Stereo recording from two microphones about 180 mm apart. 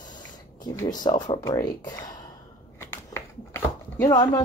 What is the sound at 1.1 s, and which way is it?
Speech, 20° left (ahead or behind).